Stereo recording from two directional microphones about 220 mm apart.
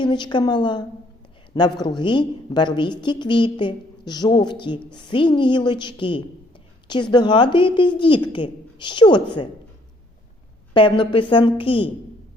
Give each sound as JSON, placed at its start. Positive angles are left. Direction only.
{"t": 0.0, "sound": "a woman's voice", "side_deg": 20}
{"t": 2.0, "sound": "a woman's voice", "side_deg": 20}
{"t": 10.8, "sound": "a woman's voice", "side_deg": 25}